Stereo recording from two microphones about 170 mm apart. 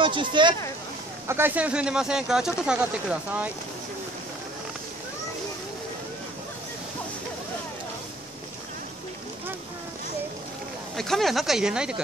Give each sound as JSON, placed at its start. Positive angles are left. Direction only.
{"t": 0.0, "sound": "speech", "side_deg": -30}
{"t": 1.2, "sound": "speech", "side_deg": -15}
{"t": 11.0, "sound": "speech", "side_deg": 0}